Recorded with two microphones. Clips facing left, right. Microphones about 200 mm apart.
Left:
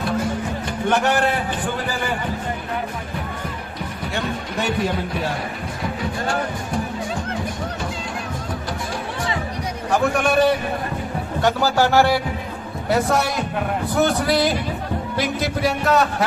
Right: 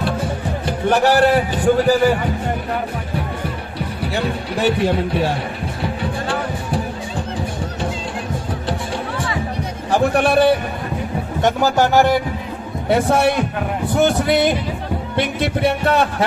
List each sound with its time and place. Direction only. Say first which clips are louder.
0.0 s music: right 1 dB; 30° right (ahead or behind)
4.0 s speech: right 4 dB; 30° right (ahead or behind)
9.8 s a man's voice: right 3 dB; 35° right (ahead or behind)
11.4 s speech: right 2 dB; 20° right (ahead or behind)
12.9 s speech: right 4 dB; 30° right (ahead or behind)
15.6 s speech: right 1 dB; 30° right (ahead or behind)